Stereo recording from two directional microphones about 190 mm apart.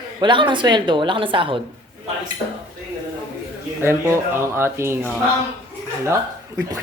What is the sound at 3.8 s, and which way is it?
Speech, 15° right (ahead or behind).